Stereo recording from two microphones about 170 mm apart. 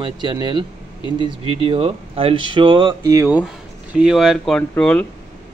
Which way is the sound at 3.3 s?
5° right (ahead or behind).